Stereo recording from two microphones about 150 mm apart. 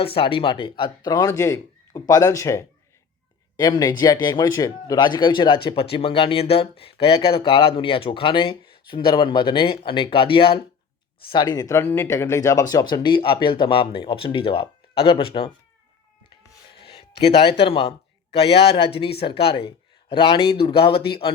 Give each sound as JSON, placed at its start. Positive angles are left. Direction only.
{"t": 0.0, "sound": "speech", "side_deg": 40}
{"t": 17.2, "sound": "speech", "side_deg": 35}